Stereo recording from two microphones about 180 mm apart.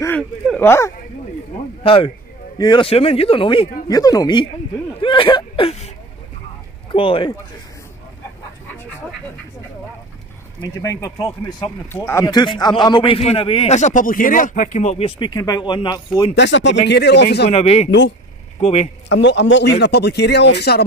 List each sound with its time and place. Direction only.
0.6 s speech: 15° left (ahead or behind)
1.8 s a man's voice: 30° left (ahead or behind)
6.9 s a man's voice: 30° left (ahead or behind)
10.6 s a man's voice: 20° left (ahead or behind)
16.3 s speech: 80° left
16.8 s a man's voice: 70° left (ahead or behind)
17.5 s speech: 35° left (ahead or behind)
19.0 s a man's voice: 90° left; by 20.8 s 65° left (ahead or behind)